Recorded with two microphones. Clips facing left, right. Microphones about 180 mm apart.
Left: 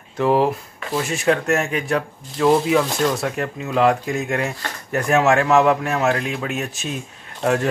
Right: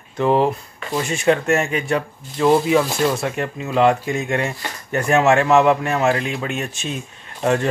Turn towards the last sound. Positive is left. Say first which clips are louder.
# right 1 dB
turn(degrees=0)  # may be behind; listen again after turning